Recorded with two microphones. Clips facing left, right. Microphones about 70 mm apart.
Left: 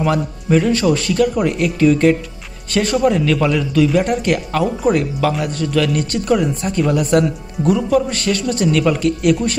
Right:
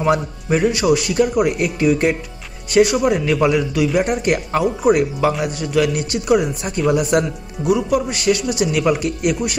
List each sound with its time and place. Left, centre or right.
0.0 s a man's voice: centre